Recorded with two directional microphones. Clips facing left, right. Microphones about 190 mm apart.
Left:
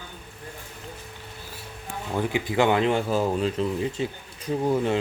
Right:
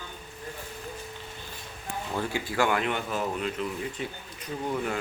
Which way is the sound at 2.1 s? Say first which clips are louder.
Left 5 dB; 15° left (ahead or behind).